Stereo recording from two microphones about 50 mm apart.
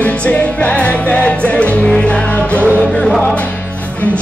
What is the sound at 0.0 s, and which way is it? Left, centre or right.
Music, left.